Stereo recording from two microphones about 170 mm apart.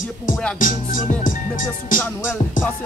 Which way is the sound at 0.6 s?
50° left (ahead or behind).